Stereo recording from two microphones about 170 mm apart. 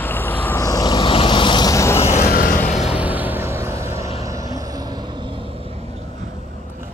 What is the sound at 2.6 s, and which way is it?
Vehicle, 40° left (ahead or behind).